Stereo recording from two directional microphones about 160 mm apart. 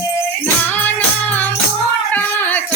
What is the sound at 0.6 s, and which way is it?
Music, 10° left (ahead or behind).